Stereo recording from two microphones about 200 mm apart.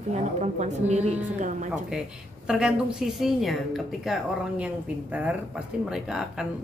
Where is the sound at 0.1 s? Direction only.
35° right (ahead or behind).